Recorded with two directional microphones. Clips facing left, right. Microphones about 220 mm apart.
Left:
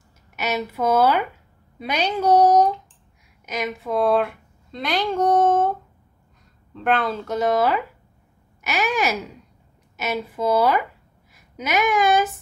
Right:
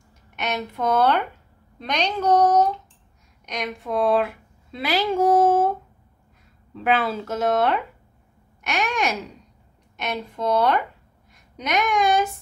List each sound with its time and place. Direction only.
0.4 s a woman's voice: 5° left (ahead or behind)